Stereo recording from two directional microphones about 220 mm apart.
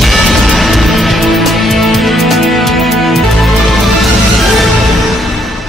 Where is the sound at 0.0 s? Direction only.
Centre (ahead or behind).